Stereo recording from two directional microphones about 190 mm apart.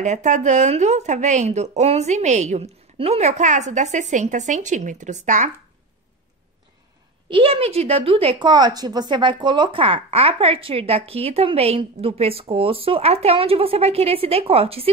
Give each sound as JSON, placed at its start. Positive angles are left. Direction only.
{"t": 0.0, "sound": "speech", "side_deg": -40}
{"t": 7.2, "sound": "speech", "side_deg": -30}